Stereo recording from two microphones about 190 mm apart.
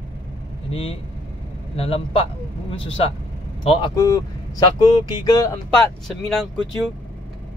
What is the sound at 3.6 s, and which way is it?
Speech, 25° left (ahead or behind).